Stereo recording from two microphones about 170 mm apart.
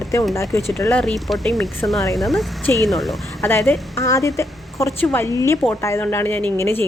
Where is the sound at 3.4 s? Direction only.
10° left (ahead or behind).